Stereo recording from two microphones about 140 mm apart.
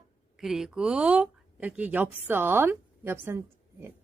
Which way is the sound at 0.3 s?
Centre (ahead or behind).